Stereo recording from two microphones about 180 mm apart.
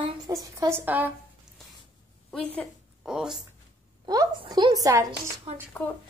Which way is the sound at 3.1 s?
5° right (ahead or behind).